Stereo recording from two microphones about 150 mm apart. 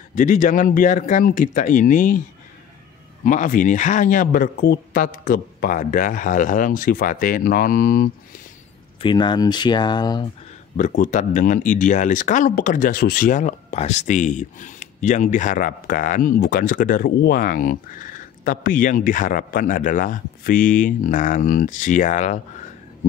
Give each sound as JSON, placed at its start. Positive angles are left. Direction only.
{"t": 0.1, "sound": "speech", "side_deg": 55}
{"t": 3.3, "sound": "speech", "side_deg": 60}
{"t": 9.0, "sound": "speech", "side_deg": 30}
{"t": 10.8, "sound": "speech", "side_deg": 55}